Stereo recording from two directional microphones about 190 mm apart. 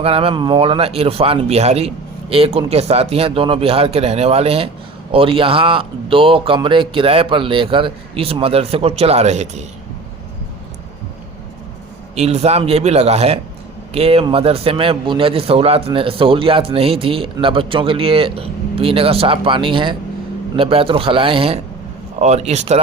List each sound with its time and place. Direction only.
0.0 s a man's voice: 30° right (ahead or behind)
12.1 s a man's voice: 35° right (ahead or behind)